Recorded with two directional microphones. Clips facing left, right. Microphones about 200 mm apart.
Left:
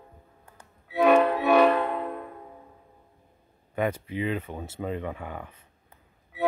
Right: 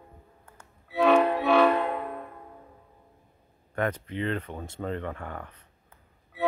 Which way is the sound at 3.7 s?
10° left (ahead or behind).